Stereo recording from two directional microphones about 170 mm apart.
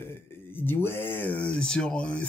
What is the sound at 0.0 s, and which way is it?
Speech, 10° left (ahead or behind).